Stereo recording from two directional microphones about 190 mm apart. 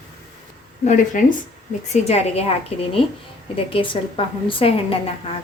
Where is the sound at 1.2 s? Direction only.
45° left (ahead or behind).